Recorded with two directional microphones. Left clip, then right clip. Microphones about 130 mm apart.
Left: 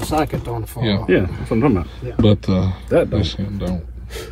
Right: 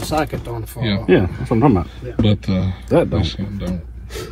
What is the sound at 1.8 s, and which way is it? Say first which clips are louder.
Speech: left 3 dB; 15° left (ahead or behind).